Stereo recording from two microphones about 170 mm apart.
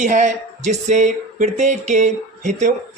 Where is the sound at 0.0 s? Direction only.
45° right (ahead or behind).